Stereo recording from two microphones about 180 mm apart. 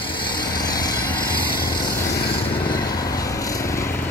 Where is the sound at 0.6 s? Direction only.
20° left (ahead or behind).